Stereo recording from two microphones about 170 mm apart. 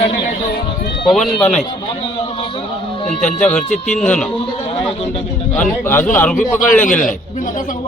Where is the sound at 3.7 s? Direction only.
45° left (ahead or behind).